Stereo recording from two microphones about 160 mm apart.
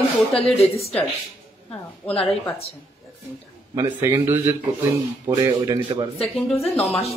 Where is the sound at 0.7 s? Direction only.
40° left (ahead or behind).